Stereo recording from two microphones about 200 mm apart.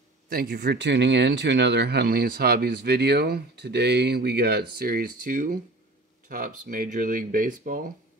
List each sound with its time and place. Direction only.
0.3 s speech: 50° right (ahead or behind)